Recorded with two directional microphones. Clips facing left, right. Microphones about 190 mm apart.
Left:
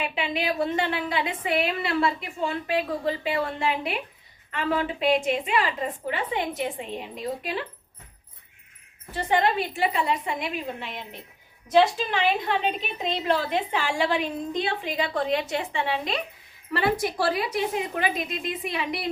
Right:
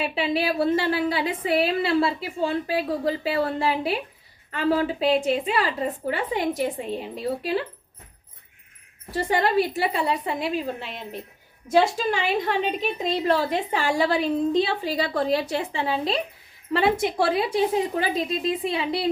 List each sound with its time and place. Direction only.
0.0 s a woman's voice: 35° right (ahead or behind)
9.1 s a woman's voice: 40° right (ahead or behind)
12.8 s a woman's voice: 40° right (ahead or behind)